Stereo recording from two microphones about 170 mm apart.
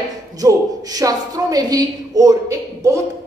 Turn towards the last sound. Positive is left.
turn(degrees=-20)  # may be behind; listen again after turning